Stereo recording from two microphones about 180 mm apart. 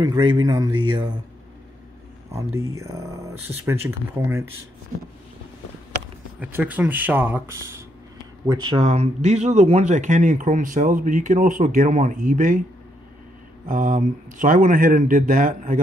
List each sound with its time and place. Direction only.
0.0 s speech: 25° right (ahead or behind)
2.3 s speech: 15° right (ahead or behind)
6.4 s speech: 10° right (ahead or behind)
8.5 s speech: 25° right (ahead or behind)
8.8 s speech: 35° right (ahead or behind)
13.7 s speech: 50° right (ahead or behind)